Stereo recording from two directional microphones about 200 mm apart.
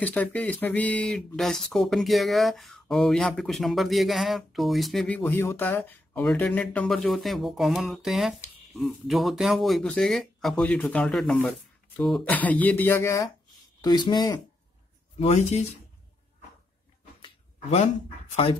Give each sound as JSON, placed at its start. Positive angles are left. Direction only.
{"t": 0.0, "sound": "speech", "side_deg": 5}
{"t": 15.1, "sound": "speech", "side_deg": 35}
{"t": 17.2, "sound": "a sound", "side_deg": 30}
{"t": 18.3, "sound": "speech", "side_deg": 30}